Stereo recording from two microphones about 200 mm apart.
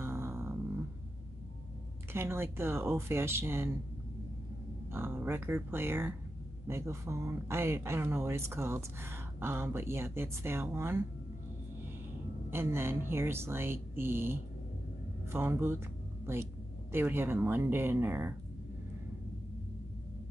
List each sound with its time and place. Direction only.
0.0 s a sound: 15° right (ahead or behind)
2.1 s speech: 10° right (ahead or behind)
4.9 s speech: 10° right (ahead or behind)
12.4 s speech: 10° right (ahead or behind)